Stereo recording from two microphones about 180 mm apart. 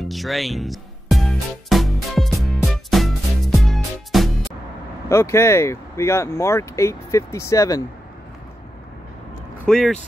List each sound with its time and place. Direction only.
0.0 s music: centre (ahead or behind)
5.1 s speech: 15° left (ahead or behind)
9.7 s speech: 5° left (ahead or behind)